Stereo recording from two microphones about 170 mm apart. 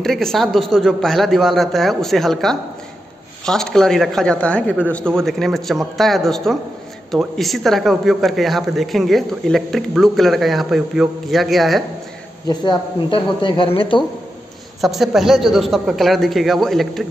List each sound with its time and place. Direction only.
0.0 s speech: centre (ahead or behind)
12.4 s speech: 25° left (ahead or behind)
14.8 s speech: centre (ahead or behind)